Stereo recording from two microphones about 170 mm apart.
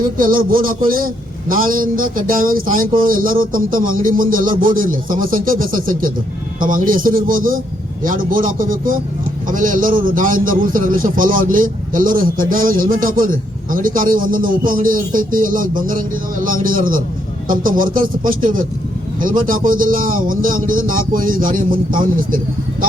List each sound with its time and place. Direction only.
0.2 s a man's voice: 55° right (ahead or behind)